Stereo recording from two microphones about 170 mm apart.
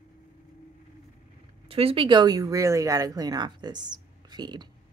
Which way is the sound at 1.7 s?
35° right (ahead or behind).